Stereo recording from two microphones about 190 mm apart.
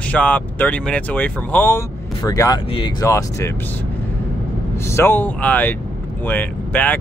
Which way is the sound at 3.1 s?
15° left (ahead or behind).